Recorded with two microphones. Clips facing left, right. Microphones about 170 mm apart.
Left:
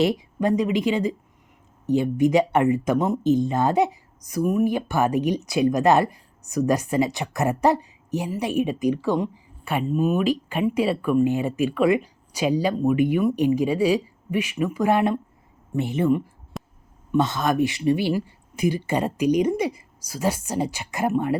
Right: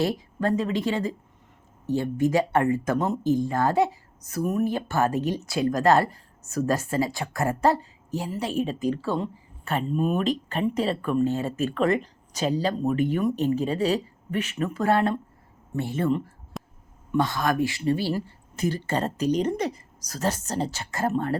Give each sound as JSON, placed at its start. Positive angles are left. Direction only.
{"t": 0.0, "sound": "speech", "side_deg": 15}
{"t": 16.5, "sound": "a sound", "side_deg": 0}
{"t": 17.1, "sound": "speech", "side_deg": 20}